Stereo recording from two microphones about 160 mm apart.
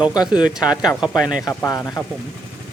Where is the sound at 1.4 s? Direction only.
20° left (ahead or behind).